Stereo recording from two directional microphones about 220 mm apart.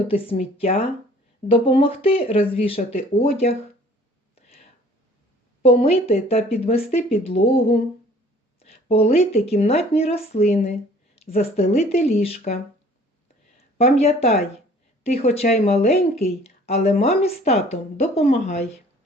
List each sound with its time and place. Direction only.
0.1 s speech: 25° left (ahead or behind)
5.6 s speech: 25° left (ahead or behind)
13.7 s speech: 30° left (ahead or behind)